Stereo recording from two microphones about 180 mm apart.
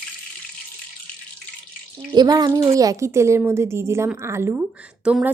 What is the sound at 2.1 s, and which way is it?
A woman's voice, 20° right (ahead or behind).